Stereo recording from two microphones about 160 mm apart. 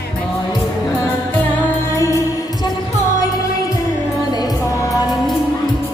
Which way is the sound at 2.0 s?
20° left (ahead or behind).